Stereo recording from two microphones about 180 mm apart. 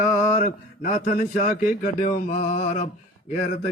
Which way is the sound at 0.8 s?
45° left (ahead or behind).